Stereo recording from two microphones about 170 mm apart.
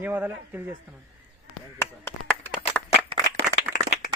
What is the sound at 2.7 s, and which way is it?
Clapping, 5° left (ahead or behind).